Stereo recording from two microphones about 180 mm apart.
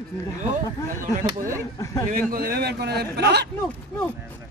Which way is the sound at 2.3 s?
55° right (ahead or behind).